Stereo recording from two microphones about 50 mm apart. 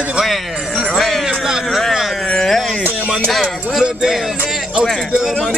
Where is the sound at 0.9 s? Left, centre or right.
Centre.